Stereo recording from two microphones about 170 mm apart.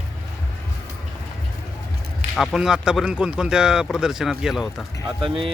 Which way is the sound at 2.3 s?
Centre (ahead or behind).